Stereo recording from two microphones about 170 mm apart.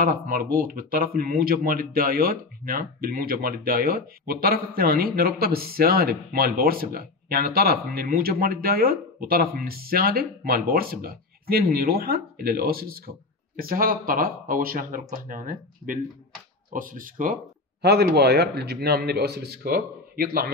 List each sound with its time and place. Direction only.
0.0 s speech: 60° right (ahead or behind)
17.8 s a man's voice: 70° right (ahead or behind)